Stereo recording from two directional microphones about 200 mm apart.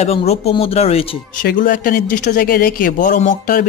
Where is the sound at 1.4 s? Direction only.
45° left (ahead or behind).